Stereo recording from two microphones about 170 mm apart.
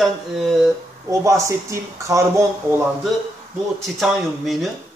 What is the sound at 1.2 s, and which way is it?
Speech, 20° right (ahead or behind).